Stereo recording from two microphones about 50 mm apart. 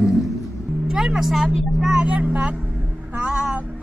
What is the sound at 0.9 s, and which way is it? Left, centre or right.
Music, centre.